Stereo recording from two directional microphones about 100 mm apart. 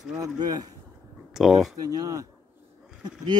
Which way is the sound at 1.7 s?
40° right (ahead or behind).